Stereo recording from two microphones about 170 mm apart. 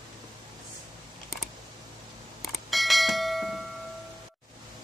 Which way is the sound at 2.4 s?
Centre (ahead or behind).